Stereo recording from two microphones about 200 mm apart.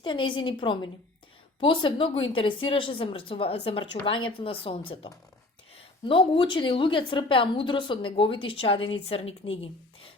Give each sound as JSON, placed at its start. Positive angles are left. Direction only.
{"t": 0.0, "sound": "a woman's voice", "side_deg": 25}
{"t": 6.1, "sound": "a woman's voice", "side_deg": 25}